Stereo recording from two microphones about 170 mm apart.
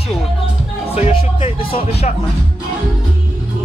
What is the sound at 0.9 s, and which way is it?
Speech, 35° left (ahead or behind).